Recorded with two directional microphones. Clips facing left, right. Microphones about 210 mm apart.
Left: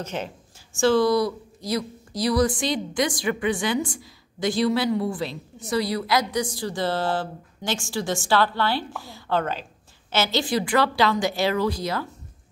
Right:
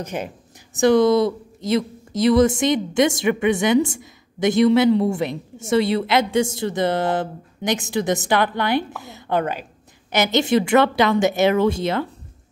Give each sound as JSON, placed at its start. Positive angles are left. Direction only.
{"t": 0.0, "sound": "a woman's voice", "side_deg": -15}